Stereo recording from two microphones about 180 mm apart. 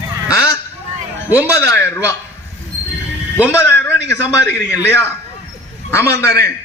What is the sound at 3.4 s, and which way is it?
A man's voice, 15° left (ahead or behind).